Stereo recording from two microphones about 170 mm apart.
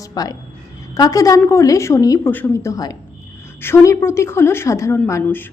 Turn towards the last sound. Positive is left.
turn(degrees=10)  # may be behind; listen again after turning